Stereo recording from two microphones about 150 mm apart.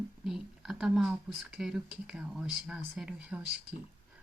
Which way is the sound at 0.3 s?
Centre (ahead or behind).